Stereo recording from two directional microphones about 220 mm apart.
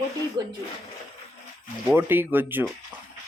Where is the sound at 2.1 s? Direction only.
10° right (ahead or behind).